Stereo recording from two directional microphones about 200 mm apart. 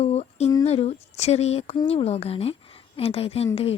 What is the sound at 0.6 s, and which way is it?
Speech, 30° left (ahead or behind).